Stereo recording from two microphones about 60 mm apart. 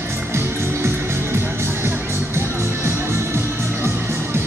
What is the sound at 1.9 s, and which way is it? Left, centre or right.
Music, right.